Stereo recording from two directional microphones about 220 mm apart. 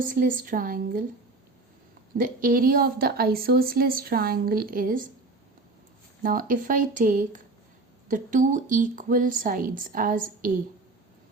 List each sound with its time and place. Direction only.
0.0 s speech: 35° right (ahead or behind)
2.1 s speech: 40° right (ahead or behind)
6.2 s speech: 40° right (ahead or behind)